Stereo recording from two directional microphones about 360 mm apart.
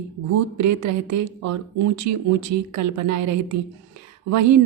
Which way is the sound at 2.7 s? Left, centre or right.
Right.